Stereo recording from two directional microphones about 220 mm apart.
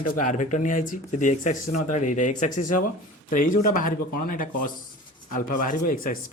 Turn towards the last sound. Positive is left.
turn(degrees=40)  # may be behind; listen again after turning